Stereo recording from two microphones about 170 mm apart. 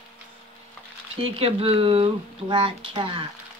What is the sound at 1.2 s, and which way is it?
Speech, 35° right (ahead or behind).